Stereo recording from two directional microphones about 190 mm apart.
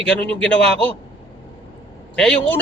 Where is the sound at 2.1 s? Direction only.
5° left (ahead or behind).